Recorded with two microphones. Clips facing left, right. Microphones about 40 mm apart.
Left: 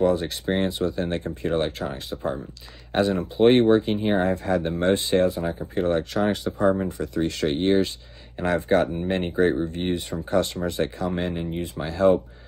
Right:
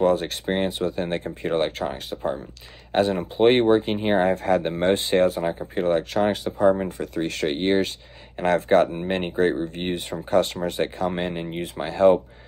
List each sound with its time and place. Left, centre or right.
0.0 s speech: right
4.2 s speech: right